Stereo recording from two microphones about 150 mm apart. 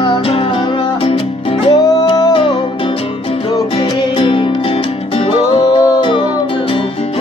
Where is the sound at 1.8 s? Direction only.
25° left (ahead or behind).